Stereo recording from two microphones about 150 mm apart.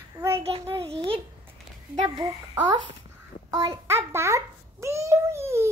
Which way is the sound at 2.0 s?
25° right (ahead or behind).